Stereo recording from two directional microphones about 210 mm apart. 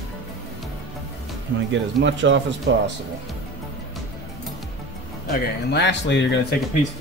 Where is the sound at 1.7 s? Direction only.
60° right (ahead or behind).